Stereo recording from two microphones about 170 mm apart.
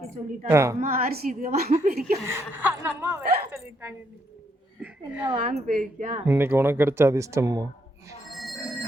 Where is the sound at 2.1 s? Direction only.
15° right (ahead or behind).